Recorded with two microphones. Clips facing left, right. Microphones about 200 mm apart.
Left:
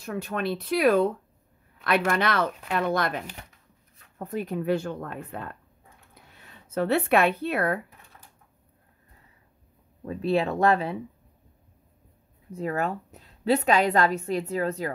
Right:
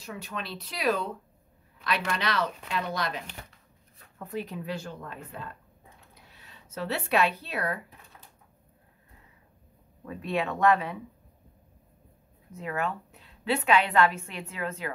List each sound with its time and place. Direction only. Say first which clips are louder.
0.0 s speech: left 8 dB; 55° left (ahead or behind)
4.2 s speech: left 5 dB; 45° left (ahead or behind)
10.0 s a woman's voice: left 6 dB; 30° left (ahead or behind)
12.5 s a woman's voice: left 4 dB; 40° left (ahead or behind)